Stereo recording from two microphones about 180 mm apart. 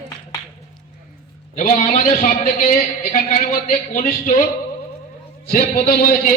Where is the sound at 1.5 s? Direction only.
45° left (ahead or behind).